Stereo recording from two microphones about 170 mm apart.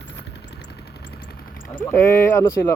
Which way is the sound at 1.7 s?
15° left (ahead or behind).